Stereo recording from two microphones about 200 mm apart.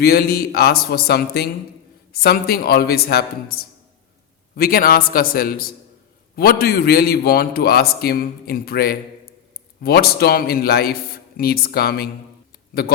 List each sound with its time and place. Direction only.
0.0 s a man's voice: 50° left (ahead or behind)